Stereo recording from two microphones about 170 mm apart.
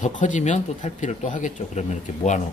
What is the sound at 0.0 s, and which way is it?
Speech, 45° left (ahead or behind).